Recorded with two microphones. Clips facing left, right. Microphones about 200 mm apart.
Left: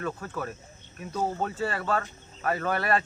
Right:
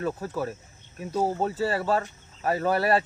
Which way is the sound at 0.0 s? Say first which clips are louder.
Right 4 dB; 35° right (ahead or behind).